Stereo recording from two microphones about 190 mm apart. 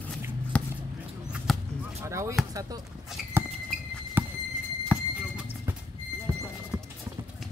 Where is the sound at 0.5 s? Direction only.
5° left (ahead or behind).